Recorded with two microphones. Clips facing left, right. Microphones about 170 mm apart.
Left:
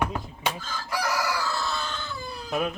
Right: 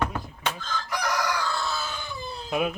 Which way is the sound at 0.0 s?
10° left (ahead or behind).